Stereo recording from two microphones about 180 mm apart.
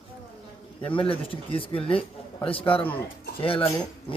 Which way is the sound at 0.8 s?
30° left (ahead or behind).